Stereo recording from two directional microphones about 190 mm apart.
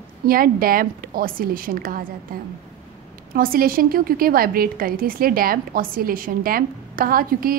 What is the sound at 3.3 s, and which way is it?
A woman's voice, 50° right (ahead or behind).